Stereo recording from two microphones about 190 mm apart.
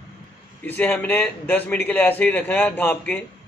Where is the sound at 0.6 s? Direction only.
10° left (ahead or behind).